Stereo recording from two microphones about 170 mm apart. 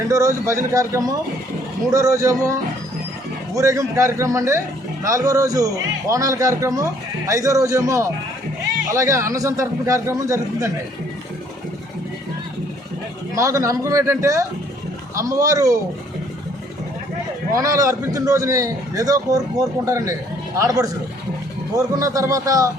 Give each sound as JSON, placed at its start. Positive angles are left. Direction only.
{"t": 0.1, "sound": "a man's voice", "side_deg": -20}
{"t": 13.3, "sound": "a man's voice", "side_deg": -20}
{"t": 17.5, "sound": "a man's voice", "side_deg": -20}
{"t": 21.9, "sound": "a man's voice", "side_deg": -20}